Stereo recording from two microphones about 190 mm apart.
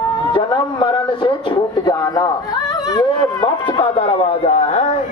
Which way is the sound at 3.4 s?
25° left (ahead or behind).